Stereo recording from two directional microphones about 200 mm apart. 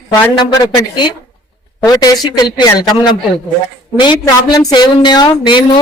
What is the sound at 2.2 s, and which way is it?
Speech, 20° left (ahead or behind).